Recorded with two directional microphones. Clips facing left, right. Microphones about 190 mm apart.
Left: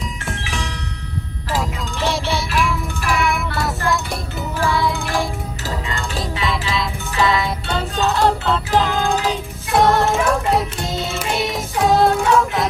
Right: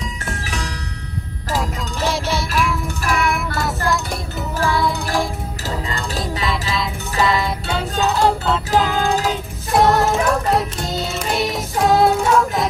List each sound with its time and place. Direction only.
2.3 s music: centre (ahead or behind)